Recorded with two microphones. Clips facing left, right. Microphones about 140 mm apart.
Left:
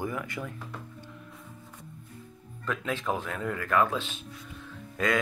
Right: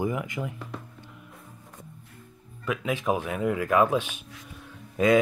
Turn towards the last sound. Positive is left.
turn(degrees=-15)  # may be behind; listen again after turning